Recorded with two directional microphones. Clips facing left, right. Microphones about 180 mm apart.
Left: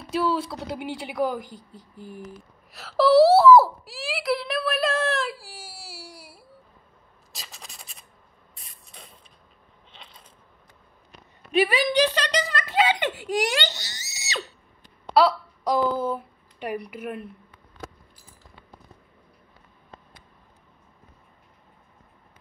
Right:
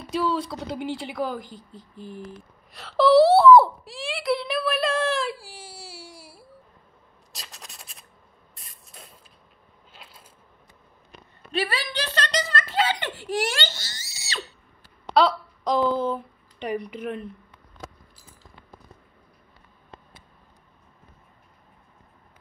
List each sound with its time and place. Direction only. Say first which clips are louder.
0.1 s a woman's voice: left 1 dB; 5° left (ahead or behind)
7.3 s rub: even; centre (ahead or behind)
8.5 s spray: even; centre (ahead or behind)
9.9 s a sound: even; 5° right (ahead or behind)
11.5 s speech: left 7 dB; 15° left (ahead or behind)
15.1 s speech: left 1 dB; 5° left (ahead or behind)